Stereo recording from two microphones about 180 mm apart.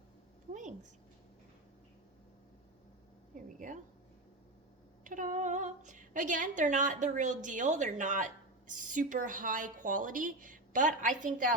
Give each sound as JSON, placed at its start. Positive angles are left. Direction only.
{"t": 3.3, "sound": "a woman's voice", "side_deg": -45}
{"t": 5.0, "sound": "a woman's voice", "side_deg": -45}